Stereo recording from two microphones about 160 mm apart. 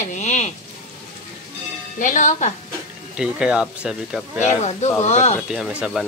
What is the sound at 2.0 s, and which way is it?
Speech, 50° left (ahead or behind).